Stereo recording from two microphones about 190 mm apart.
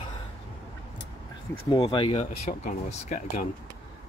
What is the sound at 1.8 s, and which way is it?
Speech, 30° left (ahead or behind).